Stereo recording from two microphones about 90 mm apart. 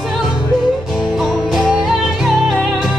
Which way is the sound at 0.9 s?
5° right (ahead or behind).